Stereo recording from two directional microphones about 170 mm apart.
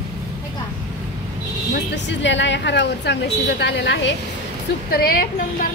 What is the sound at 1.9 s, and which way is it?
A woman's voice, 90° left.